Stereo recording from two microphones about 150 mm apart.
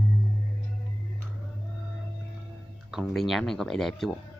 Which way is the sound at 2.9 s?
Centre (ahead or behind).